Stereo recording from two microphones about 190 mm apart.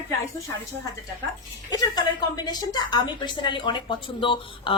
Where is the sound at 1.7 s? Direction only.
20° left (ahead or behind).